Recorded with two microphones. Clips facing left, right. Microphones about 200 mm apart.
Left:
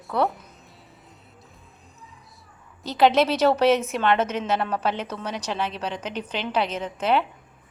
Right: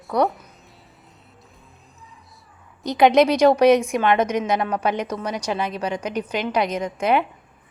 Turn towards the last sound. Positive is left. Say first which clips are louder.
# right 3 dB
turn(degrees=-10)  # may be behind; listen again after turning